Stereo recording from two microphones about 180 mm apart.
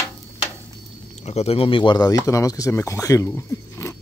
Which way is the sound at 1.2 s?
35° left (ahead or behind).